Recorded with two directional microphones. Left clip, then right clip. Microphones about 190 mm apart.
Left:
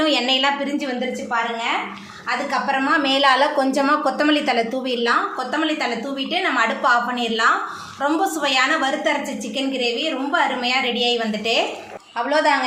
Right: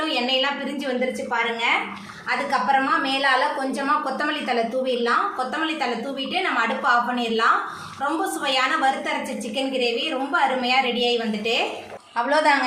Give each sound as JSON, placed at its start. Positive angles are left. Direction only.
{"t": 0.0, "sound": "a sound", "side_deg": 40}
{"t": 3.0, "sound": "a woman's voice", "side_deg": 40}
{"t": 6.4, "sound": "a woman's voice", "side_deg": 35}
{"t": 10.3, "sound": "a woman's voice", "side_deg": 25}
{"t": 12.1, "sound": "a woman's voice", "side_deg": 5}